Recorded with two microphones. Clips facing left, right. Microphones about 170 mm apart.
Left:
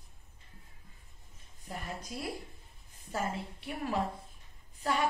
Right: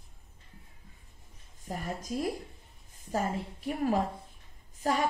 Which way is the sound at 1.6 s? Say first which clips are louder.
Right 5 dB; 45° right (ahead or behind).